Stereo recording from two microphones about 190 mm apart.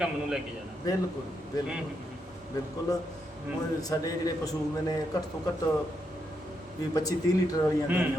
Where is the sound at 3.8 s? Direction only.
20° left (ahead or behind).